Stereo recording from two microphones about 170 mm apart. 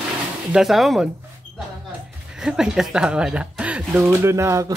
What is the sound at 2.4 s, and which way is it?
Speech, 5° right (ahead or behind).